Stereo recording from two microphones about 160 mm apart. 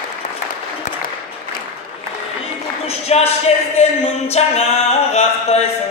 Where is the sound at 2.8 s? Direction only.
40° left (ahead or behind).